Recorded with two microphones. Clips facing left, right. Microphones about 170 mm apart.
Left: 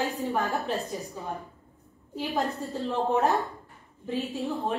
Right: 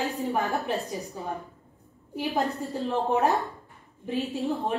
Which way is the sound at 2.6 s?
15° right (ahead or behind).